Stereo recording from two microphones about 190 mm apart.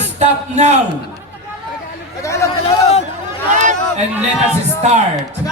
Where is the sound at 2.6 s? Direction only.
35° left (ahead or behind).